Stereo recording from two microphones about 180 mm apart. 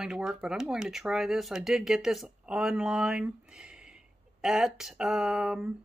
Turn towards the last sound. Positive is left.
turn(degrees=-5)  # may be behind; listen again after turning